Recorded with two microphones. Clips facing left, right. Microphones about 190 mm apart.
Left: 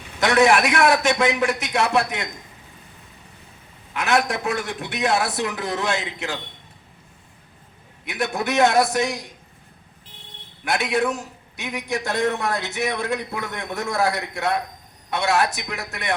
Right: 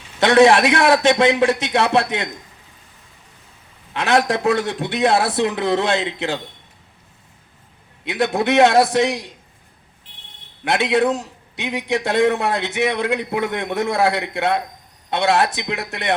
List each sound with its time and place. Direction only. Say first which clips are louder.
0.2 s a man's voice: right 5 dB; 30° right (ahead or behind)
3.9 s a man's voice: right 4 dB; 30° right (ahead or behind)
8.0 s a man's voice: right 6 dB; 30° right (ahead or behind)
10.6 s a man's voice: right 5 dB; 25° right (ahead or behind)